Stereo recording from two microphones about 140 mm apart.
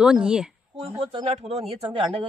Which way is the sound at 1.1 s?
40° right (ahead or behind).